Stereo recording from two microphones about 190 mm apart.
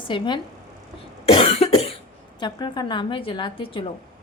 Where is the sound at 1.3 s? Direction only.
30° left (ahead or behind).